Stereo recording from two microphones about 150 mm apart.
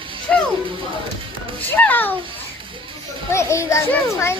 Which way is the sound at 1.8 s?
10° left (ahead or behind).